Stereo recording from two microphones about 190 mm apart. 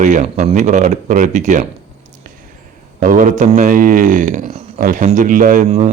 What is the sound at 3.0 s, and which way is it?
Speech, 45° right (ahead or behind).